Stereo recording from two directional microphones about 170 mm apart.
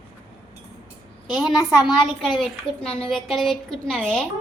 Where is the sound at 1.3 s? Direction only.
Centre (ahead or behind).